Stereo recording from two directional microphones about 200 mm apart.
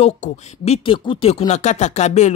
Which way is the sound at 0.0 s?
30° left (ahead or behind).